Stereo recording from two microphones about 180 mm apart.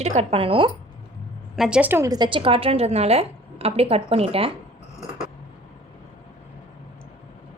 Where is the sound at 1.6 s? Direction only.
5° right (ahead or behind); by 4.5 s 35° right (ahead or behind).